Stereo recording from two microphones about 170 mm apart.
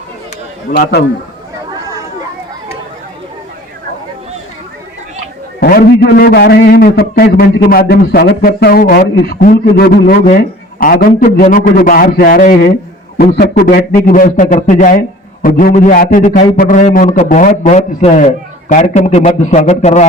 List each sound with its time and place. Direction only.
0.8 s a man's voice: 70° left (ahead or behind)
5.5 s a man's voice: 65° left (ahead or behind)
13.1 s a man's voice: 70° left (ahead or behind); by 20.1 s 45° left (ahead or behind)